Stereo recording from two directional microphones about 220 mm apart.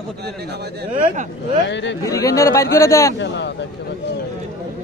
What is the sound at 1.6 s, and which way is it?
Speech, 55° left (ahead or behind).